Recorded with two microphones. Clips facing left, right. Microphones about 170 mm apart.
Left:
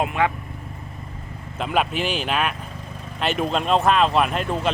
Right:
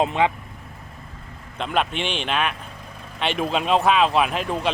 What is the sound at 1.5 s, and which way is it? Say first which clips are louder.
Speech: left 1 dB; 5° left (ahead or behind).